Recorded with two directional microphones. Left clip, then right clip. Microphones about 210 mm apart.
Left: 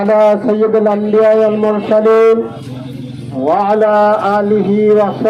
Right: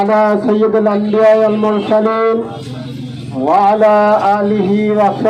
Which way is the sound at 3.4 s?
55° left (ahead or behind).